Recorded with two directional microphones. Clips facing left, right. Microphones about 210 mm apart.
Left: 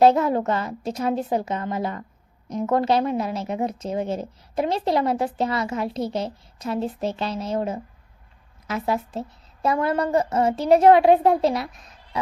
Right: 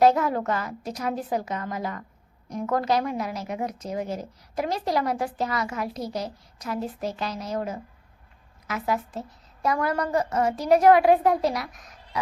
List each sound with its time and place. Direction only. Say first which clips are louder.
0.0 s a woman's voice: left 3 dB; 25° left (ahead or behind)